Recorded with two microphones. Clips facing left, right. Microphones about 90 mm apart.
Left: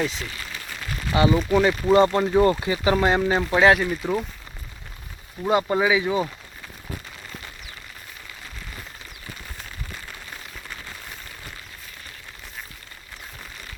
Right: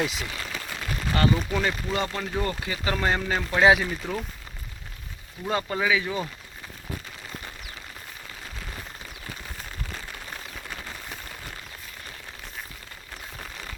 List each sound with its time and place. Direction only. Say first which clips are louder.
0.0 s speech: left 2 dB; 15° right (ahead or behind)
1.1 s speech: left 4 dB; 15° left (ahead or behind)
1.5 s speech: left 9 dB; 25° left (ahead or behind)
3.6 s speech: left 1 dB; centre (ahead or behind)
4.0 s speech: left 8 dB; 10° left (ahead or behind)
5.4 s speech: left 6 dB; 20° left (ahead or behind)